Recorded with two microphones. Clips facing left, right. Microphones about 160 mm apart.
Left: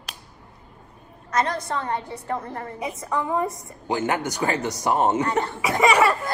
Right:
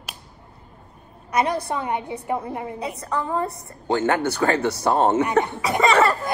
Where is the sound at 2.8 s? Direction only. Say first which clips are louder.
Left 2 dB; 20° left (ahead or behind).